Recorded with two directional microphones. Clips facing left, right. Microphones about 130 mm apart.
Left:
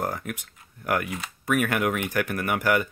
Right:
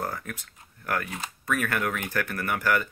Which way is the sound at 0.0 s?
20° left (ahead or behind).